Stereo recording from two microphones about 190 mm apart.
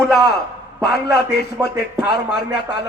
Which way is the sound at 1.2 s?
15° right (ahead or behind).